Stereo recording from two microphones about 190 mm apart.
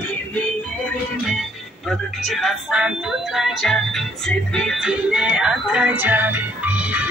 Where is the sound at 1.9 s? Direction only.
Centre (ahead or behind).